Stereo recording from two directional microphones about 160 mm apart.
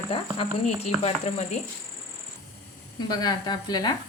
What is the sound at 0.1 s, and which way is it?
Speech, 35° left (ahead or behind).